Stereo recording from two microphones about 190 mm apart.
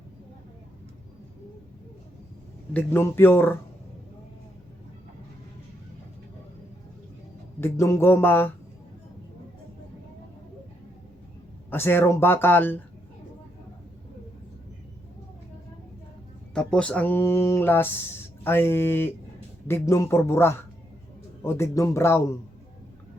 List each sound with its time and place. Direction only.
2.7 s speech: 10° left (ahead or behind)
7.6 s speech: 15° left (ahead or behind)
11.7 s speech: 10° left (ahead or behind)
16.6 s speech: 5° left (ahead or behind)